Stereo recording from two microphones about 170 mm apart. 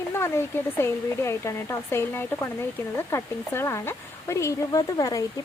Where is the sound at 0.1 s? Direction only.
15° left (ahead or behind).